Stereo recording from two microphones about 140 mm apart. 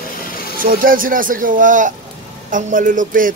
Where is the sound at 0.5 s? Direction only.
90° right; by 3.3 s 75° right (ahead or behind).